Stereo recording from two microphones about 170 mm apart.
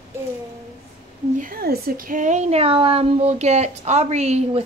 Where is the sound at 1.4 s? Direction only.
55° right (ahead or behind); by 4.6 s 40° right (ahead or behind).